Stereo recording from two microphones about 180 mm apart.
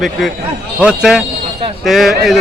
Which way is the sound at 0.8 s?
5° right (ahead or behind).